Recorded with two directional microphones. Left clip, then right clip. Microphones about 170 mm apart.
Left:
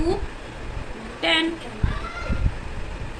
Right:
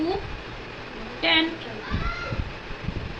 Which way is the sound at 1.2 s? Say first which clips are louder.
Even; 25° left (ahead or behind).